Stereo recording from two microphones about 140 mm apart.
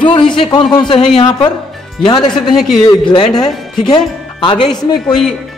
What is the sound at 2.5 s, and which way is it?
Speech, centre (ahead or behind).